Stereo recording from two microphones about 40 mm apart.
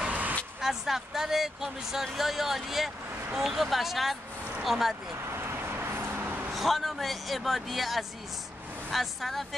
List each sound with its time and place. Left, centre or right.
0.1 s vehicle: right
0.6 s speech: centre
5.3 s vehicle: right
6.5 s speech: centre